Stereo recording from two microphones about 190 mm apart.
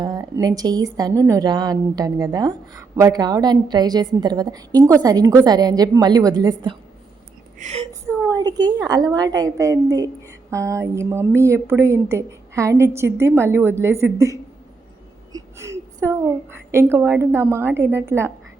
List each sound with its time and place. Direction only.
0.0 s a woman's voice: 20° right (ahead or behind)
7.6 s speech: 35° right (ahead or behind)
8.3 s a woman's voice: 20° right (ahead or behind)
15.3 s a sound: 15° right (ahead or behind)
16.7 s speech: 15° right (ahead or behind)